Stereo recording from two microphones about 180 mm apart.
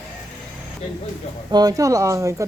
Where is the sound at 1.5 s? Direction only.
20° right (ahead or behind).